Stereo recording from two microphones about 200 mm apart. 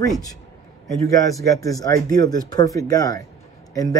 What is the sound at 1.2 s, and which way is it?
A man's voice, 15° left (ahead or behind).